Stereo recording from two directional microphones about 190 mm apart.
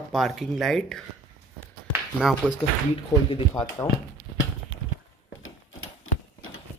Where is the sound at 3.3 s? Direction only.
25° left (ahead or behind).